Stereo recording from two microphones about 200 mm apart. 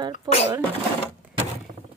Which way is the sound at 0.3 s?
20° right (ahead or behind).